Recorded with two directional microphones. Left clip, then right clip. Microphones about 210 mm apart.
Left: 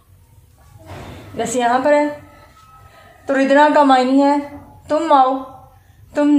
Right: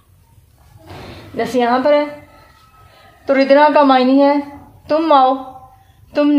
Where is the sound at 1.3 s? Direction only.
45° right (ahead or behind).